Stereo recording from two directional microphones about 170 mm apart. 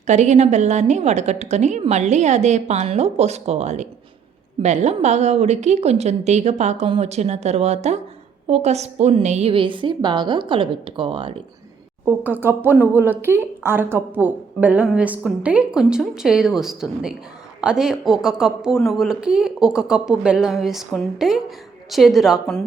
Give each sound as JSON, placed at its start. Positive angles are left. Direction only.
{"t": 0.1, "sound": "a woman's voice", "side_deg": -45}
{"t": 12.0, "sound": "a man's voice", "side_deg": -10}